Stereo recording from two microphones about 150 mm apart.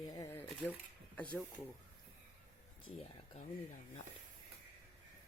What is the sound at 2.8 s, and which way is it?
Speech, 40° left (ahead or behind).